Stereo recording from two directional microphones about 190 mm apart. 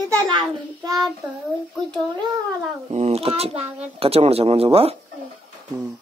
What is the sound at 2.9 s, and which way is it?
Speech, 35° right (ahead or behind).